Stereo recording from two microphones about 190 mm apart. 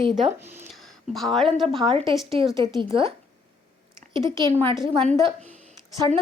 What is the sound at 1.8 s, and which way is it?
A woman's voice, 25° right (ahead or behind).